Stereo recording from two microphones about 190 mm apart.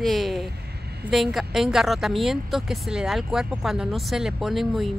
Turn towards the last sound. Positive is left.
turn(degrees=0)  # may be behind; listen again after turning